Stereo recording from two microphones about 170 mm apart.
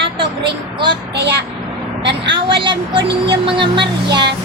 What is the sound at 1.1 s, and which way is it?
Speech, 90° right.